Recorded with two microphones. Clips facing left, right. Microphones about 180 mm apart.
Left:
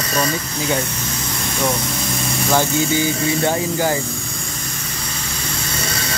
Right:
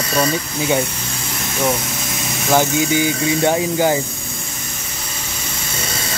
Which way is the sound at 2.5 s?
15° right (ahead or behind).